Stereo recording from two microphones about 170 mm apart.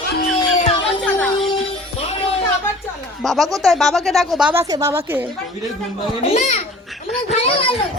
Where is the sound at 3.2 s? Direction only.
Centre (ahead or behind).